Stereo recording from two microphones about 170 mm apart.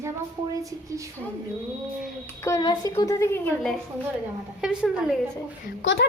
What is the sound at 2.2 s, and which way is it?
A child's voice, 15° left (ahead or behind).